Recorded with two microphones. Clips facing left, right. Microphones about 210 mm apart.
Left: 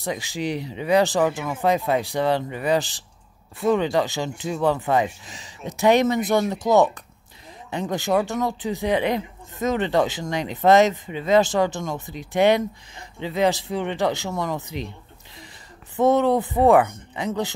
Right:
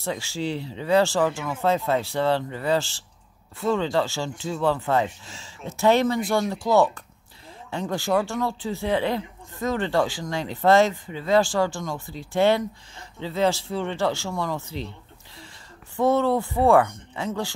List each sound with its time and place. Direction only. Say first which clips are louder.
0.0 s speech: left 1 dB; 15° left (ahead or behind)
16.0 s speech: left 3 dB; 20° left (ahead or behind)